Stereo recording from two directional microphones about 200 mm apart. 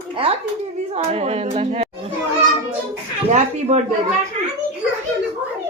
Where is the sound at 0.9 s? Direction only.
35° right (ahead or behind).